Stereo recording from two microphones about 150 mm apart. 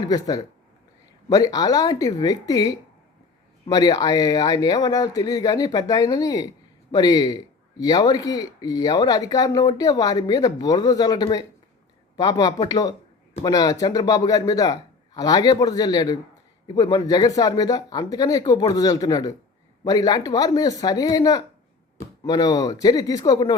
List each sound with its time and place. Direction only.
0.1 s speech: 25° left (ahead or behind)